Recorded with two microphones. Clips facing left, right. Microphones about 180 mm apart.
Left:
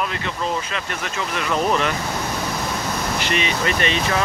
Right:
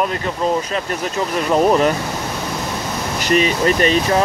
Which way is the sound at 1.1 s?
40° right (ahead or behind).